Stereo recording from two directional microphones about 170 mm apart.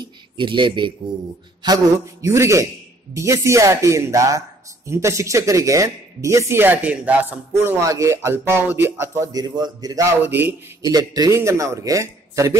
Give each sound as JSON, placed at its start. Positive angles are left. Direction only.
{"t": 0.0, "sound": "speech", "side_deg": -30}
{"t": 1.6, "sound": "mantra", "side_deg": -25}
{"t": 2.2, "sound": "speech", "side_deg": -15}